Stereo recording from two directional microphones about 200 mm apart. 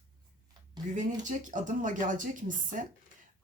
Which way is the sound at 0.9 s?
40° right (ahead or behind).